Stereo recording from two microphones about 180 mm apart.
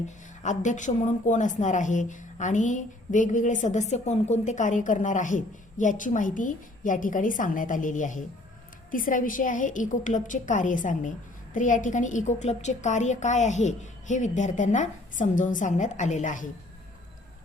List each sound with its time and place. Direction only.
0.4 s a woman's voice: 45° left (ahead or behind)